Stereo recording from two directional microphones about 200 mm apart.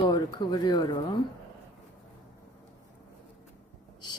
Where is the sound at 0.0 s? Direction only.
20° left (ahead or behind).